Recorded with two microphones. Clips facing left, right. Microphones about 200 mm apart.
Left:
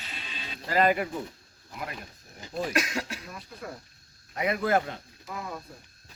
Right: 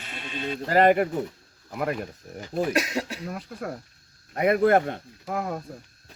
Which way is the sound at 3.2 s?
60° right (ahead or behind).